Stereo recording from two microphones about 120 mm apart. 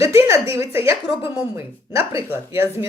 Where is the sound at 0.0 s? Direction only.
25° right (ahead or behind).